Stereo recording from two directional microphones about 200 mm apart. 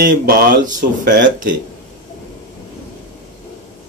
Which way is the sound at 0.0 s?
45° right (ahead or behind).